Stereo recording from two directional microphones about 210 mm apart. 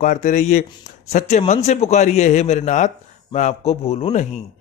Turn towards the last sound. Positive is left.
turn(degrees=30)  # may be behind; listen again after turning